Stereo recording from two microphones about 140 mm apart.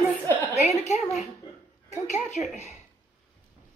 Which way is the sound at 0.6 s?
55° left (ahead or behind).